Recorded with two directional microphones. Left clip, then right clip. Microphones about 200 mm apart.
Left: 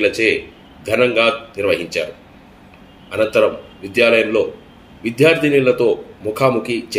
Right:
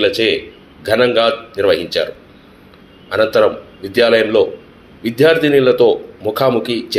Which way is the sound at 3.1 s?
Centre (ahead or behind).